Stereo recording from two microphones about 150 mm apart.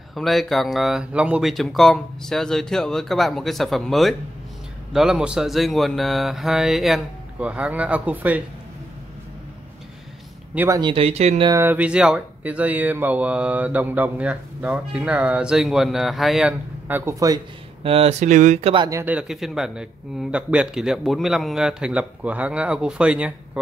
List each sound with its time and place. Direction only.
0.1 s speech: centre (ahead or behind)
10.5 s speech: 10° right (ahead or behind)
10.8 s speech: 35° right (ahead or behind)
11.6 s speech: 10° right (ahead or behind)
17.8 s speech: 40° right (ahead or behind)
18.9 s speech: 20° right (ahead or behind)
19.1 s speech: centre (ahead or behind)